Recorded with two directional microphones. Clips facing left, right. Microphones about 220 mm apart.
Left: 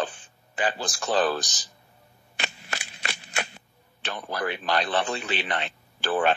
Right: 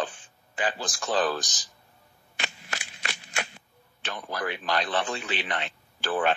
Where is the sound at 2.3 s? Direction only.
35° left (ahead or behind).